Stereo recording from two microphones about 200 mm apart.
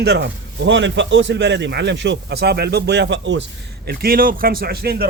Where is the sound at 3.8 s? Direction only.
50° right (ahead or behind).